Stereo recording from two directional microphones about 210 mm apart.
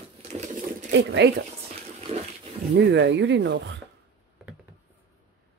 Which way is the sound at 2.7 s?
55° right (ahead or behind).